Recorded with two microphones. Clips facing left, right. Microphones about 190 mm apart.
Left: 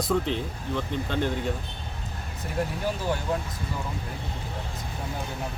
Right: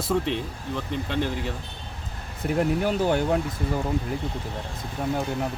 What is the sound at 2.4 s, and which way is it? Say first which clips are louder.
Speech: right 6 dB; 65° right (ahead or behind).